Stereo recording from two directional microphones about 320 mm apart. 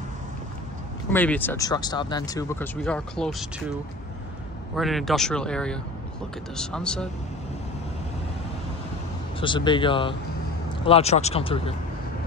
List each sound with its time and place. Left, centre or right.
1.1 s speech: centre
4.7 s speech: centre
9.4 s speech: centre